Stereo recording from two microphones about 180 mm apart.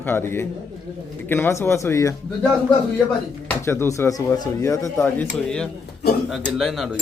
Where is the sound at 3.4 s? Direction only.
15° left (ahead or behind).